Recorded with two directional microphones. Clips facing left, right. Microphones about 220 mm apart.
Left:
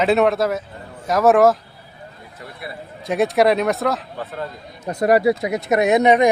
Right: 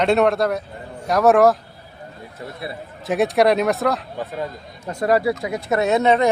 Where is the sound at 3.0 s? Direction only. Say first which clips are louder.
Even; centre (ahead or behind).